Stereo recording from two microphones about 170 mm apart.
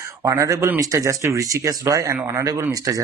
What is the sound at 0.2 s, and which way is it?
Speech, 20° right (ahead or behind).